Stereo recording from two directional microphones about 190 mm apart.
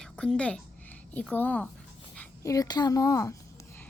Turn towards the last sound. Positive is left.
turn(degrees=15)  # may be behind; listen again after turning